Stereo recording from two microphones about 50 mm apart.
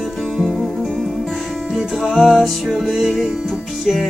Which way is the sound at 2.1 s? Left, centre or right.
Centre.